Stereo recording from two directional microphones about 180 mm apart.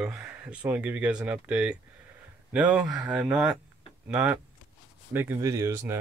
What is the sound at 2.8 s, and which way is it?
Speech, 20° right (ahead or behind).